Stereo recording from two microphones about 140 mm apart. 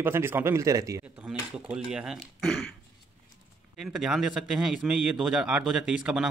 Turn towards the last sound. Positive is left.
turn(degrees=-5)  # may be behind; listen again after turning